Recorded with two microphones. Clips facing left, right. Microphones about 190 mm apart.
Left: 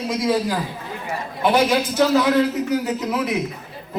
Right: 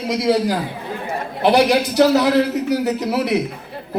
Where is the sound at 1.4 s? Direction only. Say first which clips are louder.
Right 3 dB; 70° right (ahead or behind).